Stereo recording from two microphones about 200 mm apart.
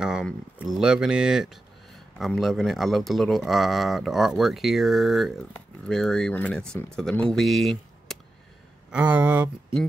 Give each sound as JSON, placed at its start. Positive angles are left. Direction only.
{"t": 0.0, "sound": "speech", "side_deg": -5}